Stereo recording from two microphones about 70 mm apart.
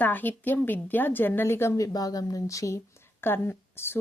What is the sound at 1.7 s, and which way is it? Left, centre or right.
Speech, left.